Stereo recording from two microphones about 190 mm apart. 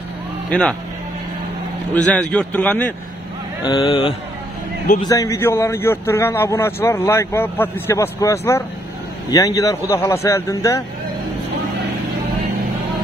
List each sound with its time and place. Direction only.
0.5 s speech: 5° left (ahead or behind)
2.0 s a man's voice: 5° left (ahead or behind)
3.6 s speech: 25° left (ahead or behind)
5.0 s a man's voice: 15° left (ahead or behind)